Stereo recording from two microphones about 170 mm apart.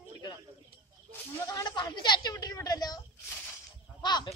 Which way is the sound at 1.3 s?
20° left (ahead or behind).